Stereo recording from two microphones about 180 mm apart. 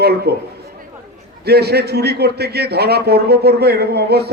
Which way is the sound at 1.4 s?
65° right (ahead or behind).